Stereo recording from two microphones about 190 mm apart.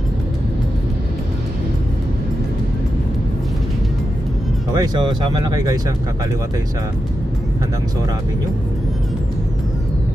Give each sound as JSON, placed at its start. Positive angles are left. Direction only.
{"t": 4.7, "sound": "speech", "side_deg": -20}